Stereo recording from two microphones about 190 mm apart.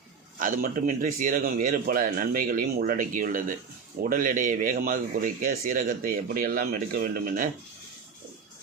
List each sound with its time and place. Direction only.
0.3 s speech: 45° right (ahead or behind)